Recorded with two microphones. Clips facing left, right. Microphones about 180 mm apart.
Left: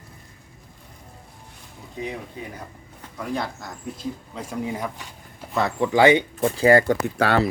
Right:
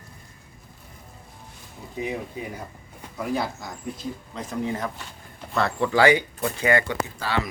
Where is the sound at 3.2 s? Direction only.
5° right (ahead or behind).